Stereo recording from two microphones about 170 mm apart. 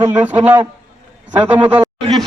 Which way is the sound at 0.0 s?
10° right (ahead or behind).